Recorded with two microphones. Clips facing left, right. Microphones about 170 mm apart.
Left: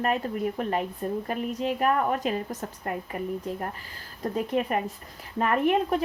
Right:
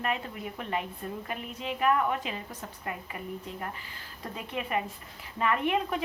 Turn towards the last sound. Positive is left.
turn(degrees=45)  # may be behind; listen again after turning